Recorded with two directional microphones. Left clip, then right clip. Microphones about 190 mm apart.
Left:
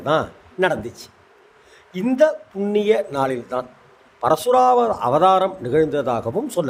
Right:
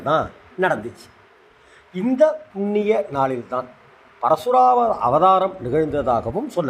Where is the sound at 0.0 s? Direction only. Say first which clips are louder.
Even; 20° left (ahead or behind).